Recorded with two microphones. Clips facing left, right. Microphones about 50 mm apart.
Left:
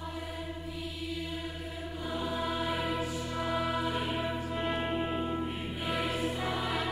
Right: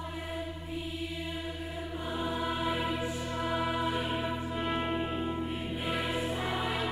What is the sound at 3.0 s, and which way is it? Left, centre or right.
Music, right.